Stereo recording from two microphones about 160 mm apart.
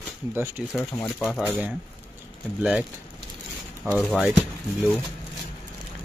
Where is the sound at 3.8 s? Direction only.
20° right (ahead or behind).